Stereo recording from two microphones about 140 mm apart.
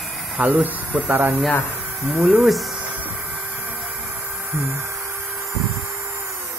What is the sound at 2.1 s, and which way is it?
Speech, 10° right (ahead or behind).